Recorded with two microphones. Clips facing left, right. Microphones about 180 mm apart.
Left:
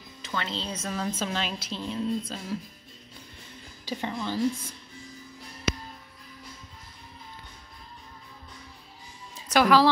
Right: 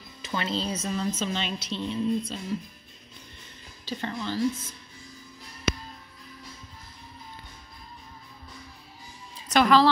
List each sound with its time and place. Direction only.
0.3 s speech: 10° right (ahead or behind)
0.9 s a woman's voice: 5° left (ahead or behind)
3.8 s a woman's voice: 15° left (ahead or behind)
9.5 s speech: 10° left (ahead or behind)